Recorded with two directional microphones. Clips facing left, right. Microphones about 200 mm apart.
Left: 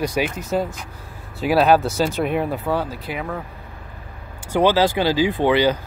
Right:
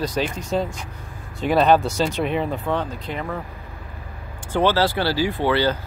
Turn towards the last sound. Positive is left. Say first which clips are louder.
# left 3 dB
turn(degrees=15)  # may be behind; listen again after turning